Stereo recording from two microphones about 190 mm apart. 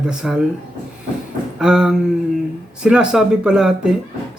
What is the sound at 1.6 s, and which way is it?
Speech, 5° right (ahead or behind).